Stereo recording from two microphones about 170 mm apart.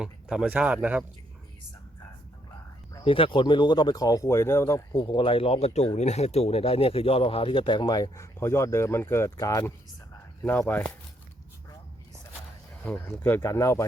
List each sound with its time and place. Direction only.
0.0 s speech: 5° right (ahead or behind)
3.0 s speech: 30° left (ahead or behind); by 4.9 s 15° left (ahead or behind)
4.9 s speech: 30° left (ahead or behind); by 10.8 s 10° left (ahead or behind)
12.8 s speech: 10° left (ahead or behind)